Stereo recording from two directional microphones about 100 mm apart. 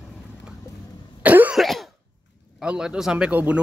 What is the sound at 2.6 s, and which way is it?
Speech, 10° right (ahead or behind).